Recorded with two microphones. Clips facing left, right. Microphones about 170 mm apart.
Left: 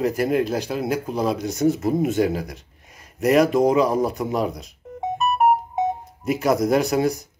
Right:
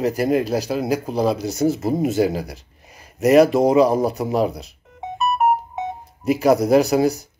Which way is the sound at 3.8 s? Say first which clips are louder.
Right 4 dB; 35° right (ahead or behind).